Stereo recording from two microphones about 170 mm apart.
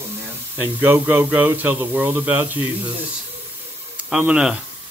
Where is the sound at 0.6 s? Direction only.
10° right (ahead or behind).